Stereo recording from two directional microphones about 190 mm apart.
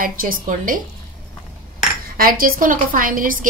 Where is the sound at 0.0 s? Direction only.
45° right (ahead or behind).